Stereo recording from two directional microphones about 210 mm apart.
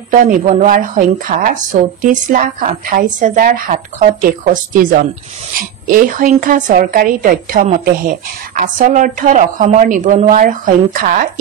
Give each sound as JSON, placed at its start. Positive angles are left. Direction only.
{"t": 0.2, "sound": "a woman's voice", "side_deg": -35}
{"t": 5.6, "sound": "a woman's voice", "side_deg": -40}